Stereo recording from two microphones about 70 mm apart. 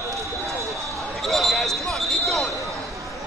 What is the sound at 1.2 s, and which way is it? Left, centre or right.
Basketball bounce, centre.